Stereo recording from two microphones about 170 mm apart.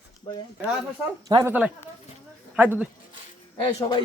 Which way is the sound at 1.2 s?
20° right (ahead or behind).